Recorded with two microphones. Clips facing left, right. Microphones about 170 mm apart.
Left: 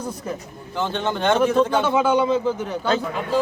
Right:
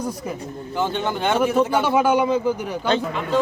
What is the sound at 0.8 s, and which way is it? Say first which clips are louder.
Speech: even; 10° right (ahead or behind).